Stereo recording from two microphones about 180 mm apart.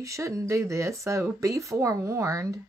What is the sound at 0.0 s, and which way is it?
Speech, 15° right (ahead or behind).